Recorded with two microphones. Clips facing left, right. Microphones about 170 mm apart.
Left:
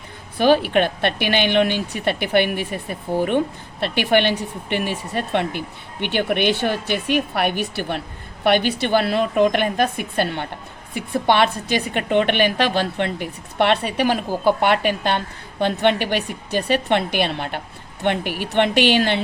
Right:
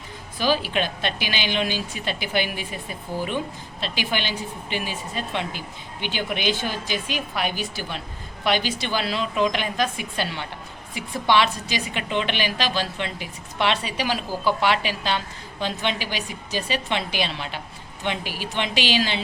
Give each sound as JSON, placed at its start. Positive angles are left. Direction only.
{"t": 0.3, "sound": "a woman's voice", "side_deg": 60}